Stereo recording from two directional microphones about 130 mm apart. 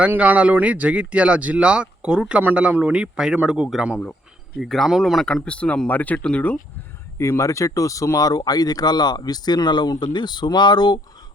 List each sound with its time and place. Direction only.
0.0 s speech: 10° right (ahead or behind); by 6.6 s 10° left (ahead or behind)
7.2 s speech: 20° left (ahead or behind)